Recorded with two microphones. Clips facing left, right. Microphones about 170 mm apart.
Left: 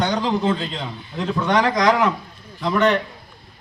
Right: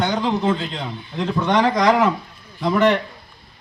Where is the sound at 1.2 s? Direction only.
15° right (ahead or behind).